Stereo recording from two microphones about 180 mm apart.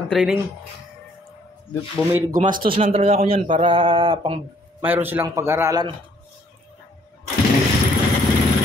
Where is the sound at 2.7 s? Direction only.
30° right (ahead or behind).